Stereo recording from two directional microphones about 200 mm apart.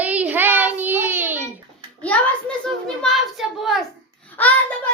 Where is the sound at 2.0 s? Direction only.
5° left (ahead or behind).